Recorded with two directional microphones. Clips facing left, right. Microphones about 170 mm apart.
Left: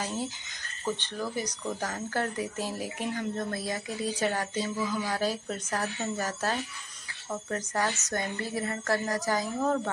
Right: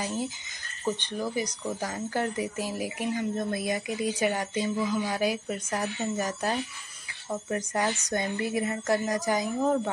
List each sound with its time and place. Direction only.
0.8 s speech: 15° right (ahead or behind)